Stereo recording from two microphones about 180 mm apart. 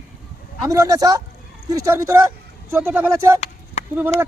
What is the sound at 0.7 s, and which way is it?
Speech, 20° right (ahead or behind).